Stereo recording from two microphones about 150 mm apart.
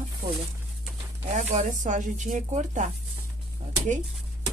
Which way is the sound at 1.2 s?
55° right (ahead or behind).